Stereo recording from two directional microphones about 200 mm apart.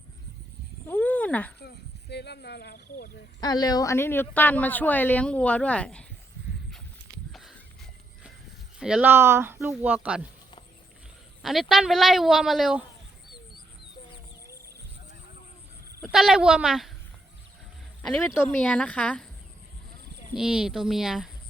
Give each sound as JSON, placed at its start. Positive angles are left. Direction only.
{"t": 0.9, "sound": "a sound", "side_deg": 10}
{"t": 1.5, "sound": "speech", "side_deg": 55}
{"t": 3.4, "sound": "speech", "side_deg": 20}
{"t": 7.3, "sound": "horse", "side_deg": 0}
{"t": 8.8, "sound": "speech", "side_deg": -5}
{"t": 11.7, "sound": "speech", "side_deg": 0}
{"t": 16.1, "sound": "speech", "side_deg": 0}
{"t": 18.0, "sound": "speech", "side_deg": 5}
{"t": 20.3, "sound": "speech", "side_deg": -5}